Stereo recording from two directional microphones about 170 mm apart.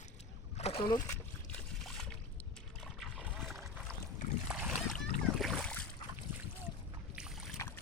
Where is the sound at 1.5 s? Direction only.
5° left (ahead or behind).